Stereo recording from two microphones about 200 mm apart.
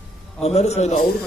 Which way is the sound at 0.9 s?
50° left (ahead or behind).